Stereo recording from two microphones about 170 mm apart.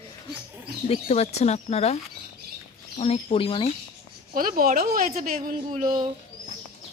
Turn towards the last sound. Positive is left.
turn(degrees=-45)  # may be behind; listen again after turning